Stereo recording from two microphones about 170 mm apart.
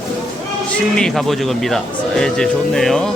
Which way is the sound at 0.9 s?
Centre (ahead or behind).